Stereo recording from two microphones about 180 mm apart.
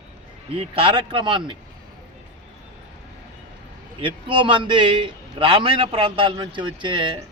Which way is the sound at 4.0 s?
25° right (ahead or behind).